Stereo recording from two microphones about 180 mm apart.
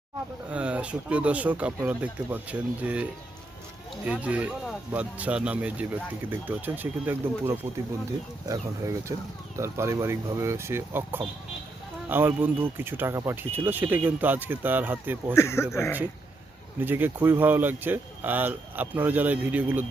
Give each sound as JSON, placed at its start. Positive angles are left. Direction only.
{"t": 0.5, "sound": "speech", "side_deg": -5}
{"t": 15.4, "sound": "speech", "side_deg": 15}
{"t": 16.8, "sound": "speech", "side_deg": -10}